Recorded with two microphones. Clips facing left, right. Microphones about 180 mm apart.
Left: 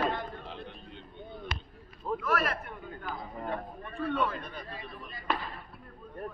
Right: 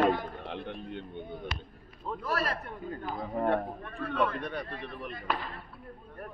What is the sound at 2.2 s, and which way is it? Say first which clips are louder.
Speech: left 1 dB; 35° right (ahead or behind).